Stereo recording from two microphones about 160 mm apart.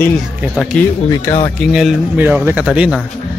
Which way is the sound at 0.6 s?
Centre (ahead or behind).